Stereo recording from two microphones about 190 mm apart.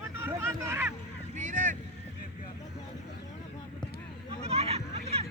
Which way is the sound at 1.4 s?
45° right (ahead or behind).